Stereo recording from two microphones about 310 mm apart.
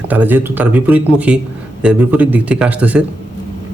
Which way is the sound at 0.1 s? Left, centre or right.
Centre.